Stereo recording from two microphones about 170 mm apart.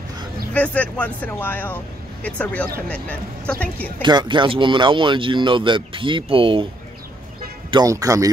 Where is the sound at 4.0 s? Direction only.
25° right (ahead or behind).